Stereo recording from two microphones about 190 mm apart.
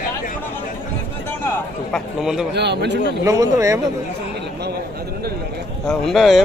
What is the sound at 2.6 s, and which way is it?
Speech, 60° right (ahead or behind).